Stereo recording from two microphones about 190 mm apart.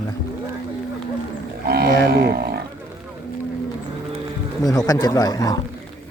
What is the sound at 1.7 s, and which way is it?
Livestock, 55° right (ahead or behind).